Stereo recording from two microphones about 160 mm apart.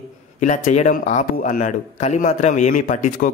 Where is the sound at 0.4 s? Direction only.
45° left (ahead or behind).